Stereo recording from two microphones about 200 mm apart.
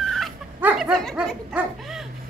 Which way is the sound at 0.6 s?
5° right (ahead or behind).